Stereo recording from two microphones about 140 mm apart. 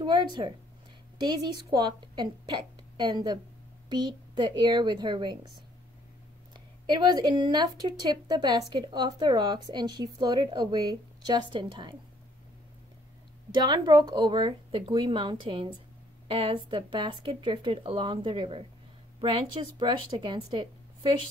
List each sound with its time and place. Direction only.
0.0 s speech: 30° right (ahead or behind)
6.5 s speech: 30° right (ahead or behind)
13.5 s speech: 30° right (ahead or behind)